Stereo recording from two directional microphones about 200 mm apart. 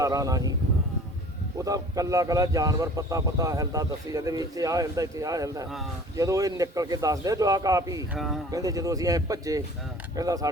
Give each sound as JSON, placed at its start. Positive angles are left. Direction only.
{"t": 0.0, "sound": "a man's voice", "side_deg": -15}
{"t": 1.5, "sound": "a man's voice", "side_deg": -15}
{"t": 8.1, "sound": "speech", "side_deg": 0}
{"t": 8.4, "sound": "a man's voice", "side_deg": -15}